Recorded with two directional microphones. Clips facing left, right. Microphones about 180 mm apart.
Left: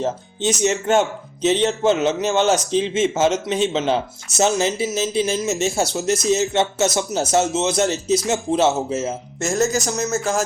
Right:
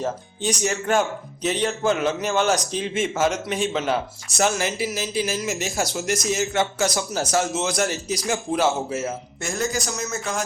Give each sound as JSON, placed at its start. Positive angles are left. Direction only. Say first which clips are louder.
{"t": 0.0, "sound": "speech", "louder": "left 4 dB", "side_deg": 25}
{"t": 9.4, "sound": "speech", "louder": "left 7 dB", "side_deg": 45}